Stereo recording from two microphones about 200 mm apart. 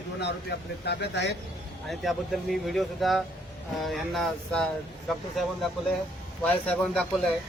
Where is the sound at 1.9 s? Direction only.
Centre (ahead or behind).